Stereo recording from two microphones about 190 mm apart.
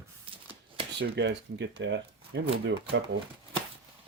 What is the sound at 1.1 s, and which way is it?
Speech, 65° right (ahead or behind).